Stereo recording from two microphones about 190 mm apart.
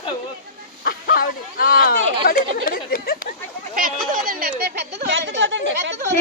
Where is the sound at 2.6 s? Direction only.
50° left (ahead or behind).